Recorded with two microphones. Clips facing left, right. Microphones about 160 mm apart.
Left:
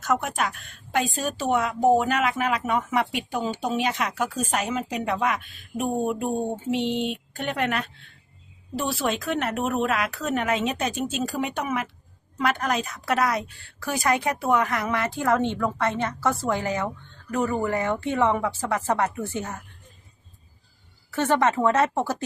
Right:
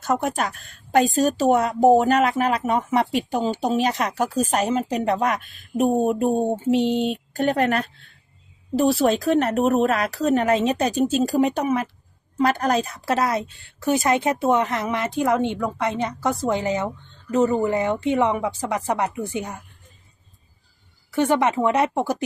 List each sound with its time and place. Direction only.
0.0 s a woman's voice: 35° right (ahead or behind); by 19.6 s 15° right (ahead or behind)
21.1 s speech: 15° right (ahead or behind)